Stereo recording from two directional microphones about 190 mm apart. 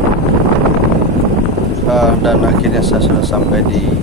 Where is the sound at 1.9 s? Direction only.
Centre (ahead or behind).